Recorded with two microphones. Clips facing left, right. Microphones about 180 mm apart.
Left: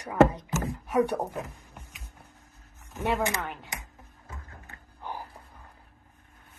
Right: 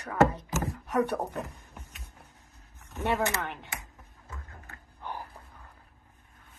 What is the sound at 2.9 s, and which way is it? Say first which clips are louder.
Speech: left 1 dB; centre (ahead or behind).